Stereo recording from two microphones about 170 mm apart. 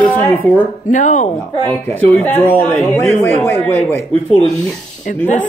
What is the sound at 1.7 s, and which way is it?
Speech, 10° left (ahead or behind).